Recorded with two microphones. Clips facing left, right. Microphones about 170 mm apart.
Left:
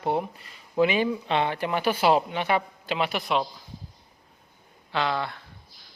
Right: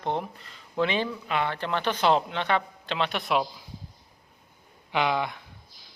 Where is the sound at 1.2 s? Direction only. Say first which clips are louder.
Left 3 dB; 30° left (ahead or behind).